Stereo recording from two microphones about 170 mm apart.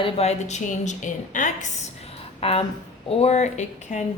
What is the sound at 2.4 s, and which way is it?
Speech, 35° left (ahead or behind).